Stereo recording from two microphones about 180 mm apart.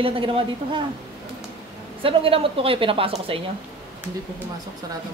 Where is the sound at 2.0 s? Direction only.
30° right (ahead or behind).